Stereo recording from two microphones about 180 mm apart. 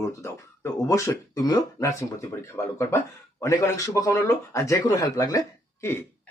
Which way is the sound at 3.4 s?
20° left (ahead or behind).